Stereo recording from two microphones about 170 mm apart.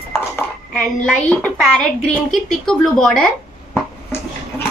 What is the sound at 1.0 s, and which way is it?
Speech, 5° left (ahead or behind).